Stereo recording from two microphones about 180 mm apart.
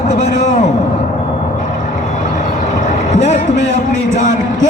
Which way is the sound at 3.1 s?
40° left (ahead or behind).